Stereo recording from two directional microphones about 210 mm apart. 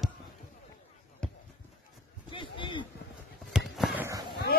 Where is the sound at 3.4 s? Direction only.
Centre (ahead or behind).